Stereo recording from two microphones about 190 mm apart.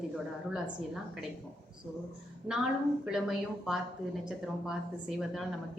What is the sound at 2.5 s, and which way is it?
A woman's voice, 5° right (ahead or behind).